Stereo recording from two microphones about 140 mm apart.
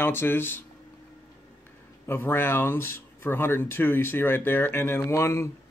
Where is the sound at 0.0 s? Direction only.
15° left (ahead or behind).